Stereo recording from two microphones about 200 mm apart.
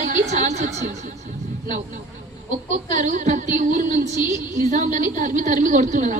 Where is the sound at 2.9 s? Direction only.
40° right (ahead or behind).